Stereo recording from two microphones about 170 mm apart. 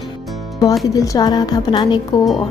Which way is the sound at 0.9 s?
20° left (ahead or behind).